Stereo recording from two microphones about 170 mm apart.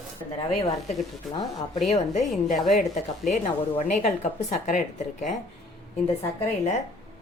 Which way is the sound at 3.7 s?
45° left (ahead or behind).